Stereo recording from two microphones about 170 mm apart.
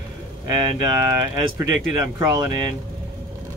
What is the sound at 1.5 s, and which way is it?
Speech, 15° right (ahead or behind).